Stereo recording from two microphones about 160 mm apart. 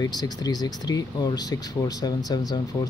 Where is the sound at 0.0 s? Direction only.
25° left (ahead or behind).